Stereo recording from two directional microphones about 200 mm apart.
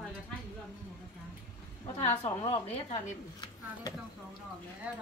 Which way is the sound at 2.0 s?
30° left (ahead or behind).